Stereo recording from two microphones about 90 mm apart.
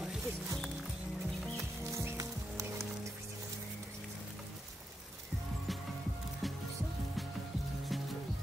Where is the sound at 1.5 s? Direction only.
35° right (ahead or behind).